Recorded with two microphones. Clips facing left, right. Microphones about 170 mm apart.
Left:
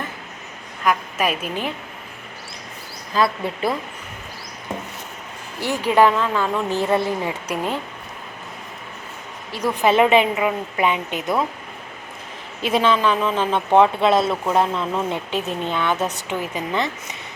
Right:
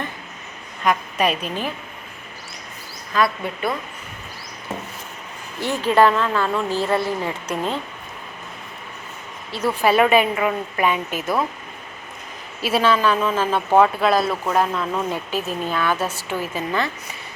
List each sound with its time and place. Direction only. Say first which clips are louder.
0.9 s a woman's voice: right 1 dB; 5° left (ahead or behind)
3.1 s speech: left 1 dB; 25° left (ahead or behind)
5.5 s speech: even; 15° left (ahead or behind)
9.5 s speech: even; 15° left (ahead or behind)
12.6 s speech: even; 20° left (ahead or behind)